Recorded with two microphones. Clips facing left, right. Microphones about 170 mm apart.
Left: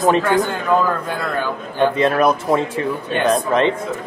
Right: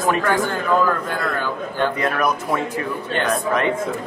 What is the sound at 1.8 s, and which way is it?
A man's voice, 25° left (ahead or behind).